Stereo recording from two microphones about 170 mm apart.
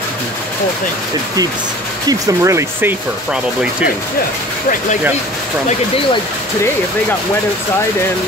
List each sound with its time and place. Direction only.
2.0 s speech: 15° right (ahead or behind)